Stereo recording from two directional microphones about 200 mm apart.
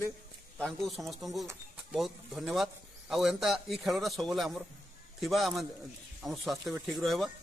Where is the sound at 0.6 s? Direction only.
Centre (ahead or behind).